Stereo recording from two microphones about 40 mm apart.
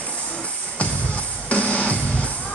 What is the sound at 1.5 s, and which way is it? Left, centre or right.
Music, left.